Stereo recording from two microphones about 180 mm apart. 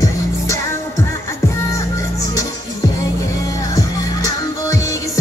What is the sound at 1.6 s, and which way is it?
Music, 15° left (ahead or behind).